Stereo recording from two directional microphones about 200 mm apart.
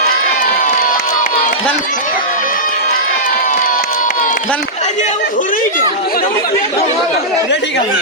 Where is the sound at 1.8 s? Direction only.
40° left (ahead or behind).